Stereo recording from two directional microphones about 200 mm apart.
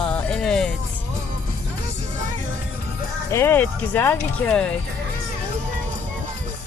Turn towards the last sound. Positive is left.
turn(degrees=5)  # may be behind; listen again after turning